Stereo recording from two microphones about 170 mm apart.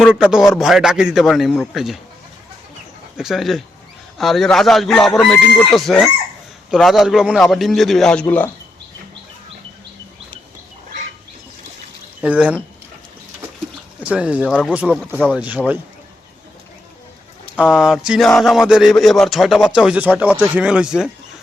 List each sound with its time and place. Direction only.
0.0 s speech: 5° right (ahead or behind)
3.2 s speech: centre (ahead or behind)
12.2 s speech: 5° right (ahead or behind)
14.0 s speech: 5° right (ahead or behind)
17.6 s speech: 5° right (ahead or behind)